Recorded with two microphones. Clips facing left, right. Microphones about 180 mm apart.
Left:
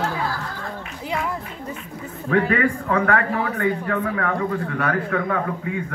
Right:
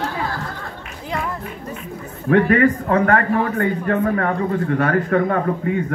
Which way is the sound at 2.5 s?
45° right (ahead or behind).